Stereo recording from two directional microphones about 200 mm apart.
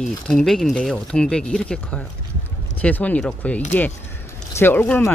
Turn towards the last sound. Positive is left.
turn(degrees=10)  # may be behind; listen again after turning